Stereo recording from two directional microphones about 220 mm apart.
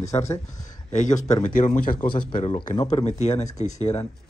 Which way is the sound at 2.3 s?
25° left (ahead or behind).